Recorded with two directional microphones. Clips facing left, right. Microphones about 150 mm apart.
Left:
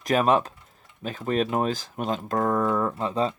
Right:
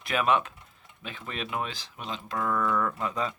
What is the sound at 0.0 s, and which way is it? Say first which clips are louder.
Speech: left 5 dB; 40° left (ahead or behind).